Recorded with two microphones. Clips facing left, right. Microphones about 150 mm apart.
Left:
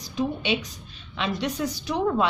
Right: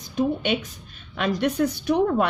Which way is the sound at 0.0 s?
50° right (ahead or behind).